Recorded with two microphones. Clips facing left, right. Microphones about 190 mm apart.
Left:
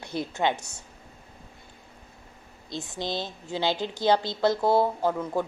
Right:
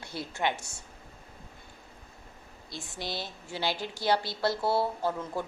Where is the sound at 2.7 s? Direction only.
20° left (ahead or behind).